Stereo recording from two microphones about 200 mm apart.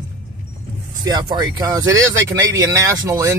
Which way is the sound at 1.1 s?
20° right (ahead or behind).